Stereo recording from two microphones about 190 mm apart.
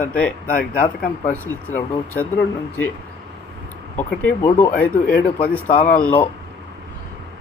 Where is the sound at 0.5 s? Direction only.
45° left (ahead or behind).